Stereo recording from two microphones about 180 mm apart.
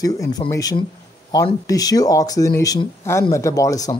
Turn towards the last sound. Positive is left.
turn(degrees=20)  # may be behind; listen again after turning